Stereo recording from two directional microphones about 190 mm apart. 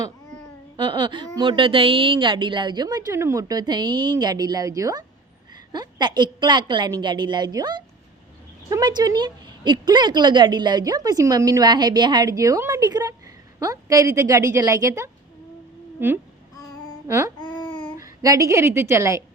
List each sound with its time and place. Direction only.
0.8 s a woman's voice: 25° right (ahead or behind)
16.0 s babbling: 10° right (ahead or behind)
17.9 s a woman's voice: 15° right (ahead or behind)